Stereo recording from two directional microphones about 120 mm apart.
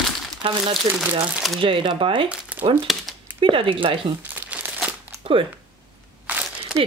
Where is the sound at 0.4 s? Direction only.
45° right (ahead or behind).